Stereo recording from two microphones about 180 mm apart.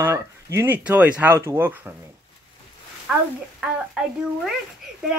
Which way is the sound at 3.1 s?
5° right (ahead or behind).